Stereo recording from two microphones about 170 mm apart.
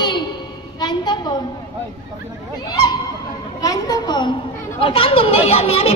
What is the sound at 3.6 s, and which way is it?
A woman's voice, 20° left (ahead or behind).